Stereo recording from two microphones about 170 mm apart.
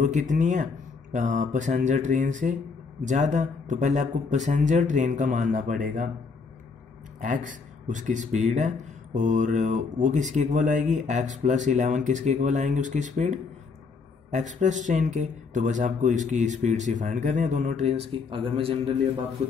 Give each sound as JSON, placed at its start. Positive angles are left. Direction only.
{"t": 0.0, "sound": "speech", "side_deg": -50}
{"t": 7.2, "sound": "a man's voice", "side_deg": -50}